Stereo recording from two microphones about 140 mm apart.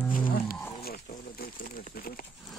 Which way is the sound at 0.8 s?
90° left.